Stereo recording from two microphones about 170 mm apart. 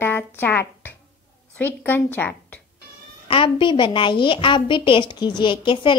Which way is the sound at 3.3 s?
30° left (ahead or behind).